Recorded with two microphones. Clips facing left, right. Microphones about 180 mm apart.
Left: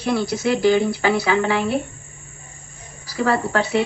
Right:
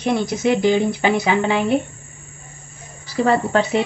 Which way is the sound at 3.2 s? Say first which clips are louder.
Right 3 dB; 20° right (ahead or behind).